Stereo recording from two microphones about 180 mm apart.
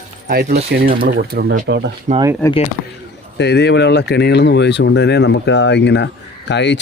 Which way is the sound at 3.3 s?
70° left (ahead or behind).